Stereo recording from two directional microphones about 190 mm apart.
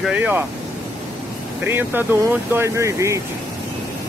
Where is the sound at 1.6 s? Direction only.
10° right (ahead or behind).